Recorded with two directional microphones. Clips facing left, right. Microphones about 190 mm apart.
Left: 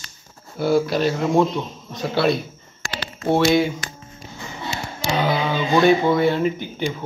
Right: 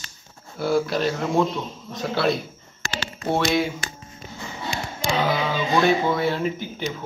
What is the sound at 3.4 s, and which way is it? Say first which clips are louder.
Speech: left 5 dB; centre (ahead or behind).